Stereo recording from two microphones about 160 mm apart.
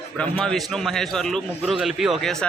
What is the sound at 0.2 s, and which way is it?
A man's voice, 5° left (ahead or behind).